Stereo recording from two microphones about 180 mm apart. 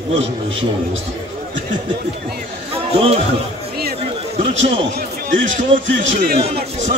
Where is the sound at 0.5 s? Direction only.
90° right.